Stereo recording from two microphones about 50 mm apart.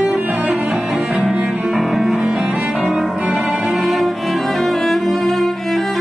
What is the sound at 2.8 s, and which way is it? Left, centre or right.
Cello, centre.